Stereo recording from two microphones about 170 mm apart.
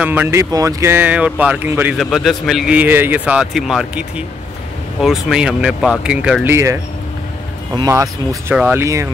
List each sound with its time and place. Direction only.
0.0 s a man's voice: 10° right (ahead or behind)
5.0 s a man's voice: 5° right (ahead or behind)
7.9 s speech: 15° right (ahead or behind)